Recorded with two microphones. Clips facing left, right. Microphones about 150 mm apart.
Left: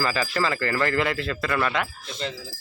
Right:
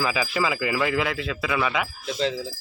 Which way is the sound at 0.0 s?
5° right (ahead or behind).